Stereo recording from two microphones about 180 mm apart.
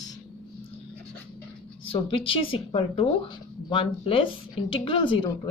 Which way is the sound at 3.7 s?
30° left (ahead or behind).